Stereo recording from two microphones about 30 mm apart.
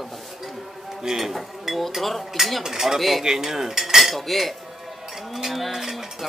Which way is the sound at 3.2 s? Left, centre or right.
Centre.